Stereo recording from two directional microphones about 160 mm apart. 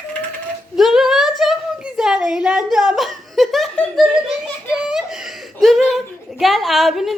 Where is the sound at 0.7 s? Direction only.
Centre (ahead or behind).